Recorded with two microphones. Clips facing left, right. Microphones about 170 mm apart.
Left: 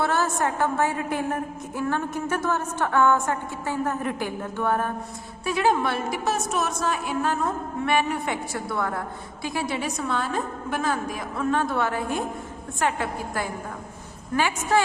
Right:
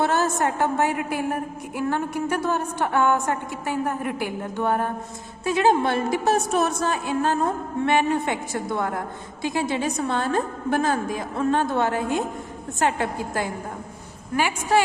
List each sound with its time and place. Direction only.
0.0 s a sound: 20° right (ahead or behind)
0.3 s a woman's voice: 20° right (ahead or behind)
14.3 s a woman's voice: 10° right (ahead or behind)